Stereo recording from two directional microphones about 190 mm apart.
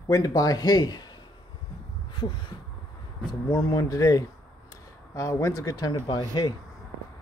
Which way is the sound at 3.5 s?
20° left (ahead or behind).